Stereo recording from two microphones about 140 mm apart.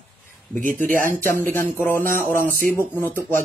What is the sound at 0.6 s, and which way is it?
Speech, 70° right (ahead or behind).